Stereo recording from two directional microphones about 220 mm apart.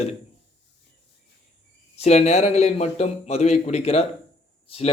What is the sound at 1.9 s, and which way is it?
A man's voice, 30° left (ahead or behind).